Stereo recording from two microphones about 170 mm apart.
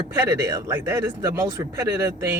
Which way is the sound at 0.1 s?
15° right (ahead or behind).